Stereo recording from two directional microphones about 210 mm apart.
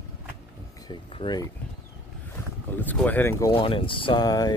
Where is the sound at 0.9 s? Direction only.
20° left (ahead or behind).